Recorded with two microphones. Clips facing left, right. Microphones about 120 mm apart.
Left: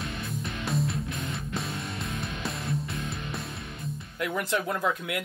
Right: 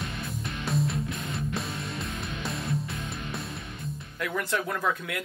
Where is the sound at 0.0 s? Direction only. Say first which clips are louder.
Left 1 dB; centre (ahead or behind).